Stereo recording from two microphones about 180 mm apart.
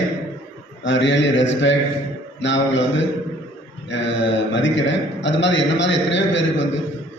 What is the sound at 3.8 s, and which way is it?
A man's voice, 85° left.